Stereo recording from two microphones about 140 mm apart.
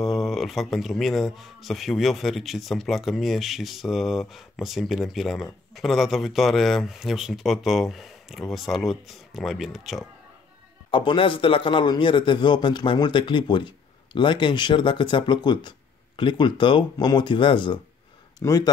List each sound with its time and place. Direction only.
0.0 s speech: centre (ahead or behind)
10.9 s a man's voice: 35° left (ahead or behind)